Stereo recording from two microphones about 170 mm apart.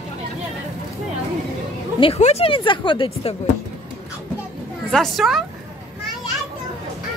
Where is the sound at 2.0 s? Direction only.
35° left (ahead or behind).